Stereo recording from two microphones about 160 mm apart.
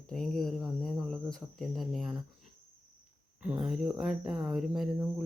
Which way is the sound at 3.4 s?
5° right (ahead or behind).